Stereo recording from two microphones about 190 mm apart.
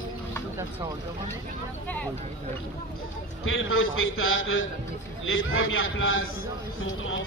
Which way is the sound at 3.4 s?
90° left.